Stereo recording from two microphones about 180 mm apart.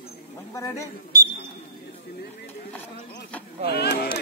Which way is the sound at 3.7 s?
65° left (ahead or behind).